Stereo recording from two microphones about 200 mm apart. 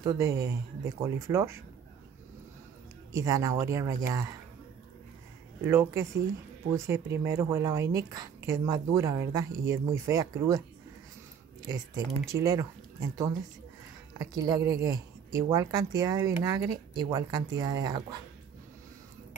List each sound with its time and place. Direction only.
0.0 s speech: 15° right (ahead or behind)
3.1 s speech: 15° right (ahead or behind)
5.6 s speech: 10° right (ahead or behind)
11.6 s speech: 20° right (ahead or behind)
14.1 s speech: 20° right (ahead or behind)